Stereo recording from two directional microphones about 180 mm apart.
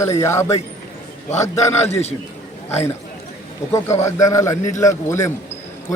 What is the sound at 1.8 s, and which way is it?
Speech, 35° left (ahead or behind).